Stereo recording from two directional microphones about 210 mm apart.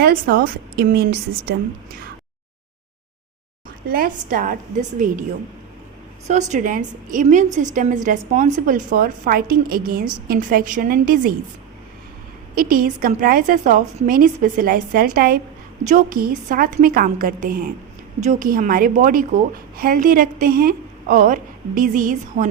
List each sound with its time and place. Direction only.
0.0 s a woman's voice: 45° right (ahead or behind)
3.8 s a woman's voice: 45° right (ahead or behind)
6.2 s a woman's voice: 35° right (ahead or behind)
12.5 s a woman's voice: 40° right (ahead or behind)